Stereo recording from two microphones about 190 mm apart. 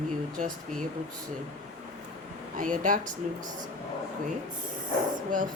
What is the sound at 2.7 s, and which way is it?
Speech, 45° right (ahead or behind).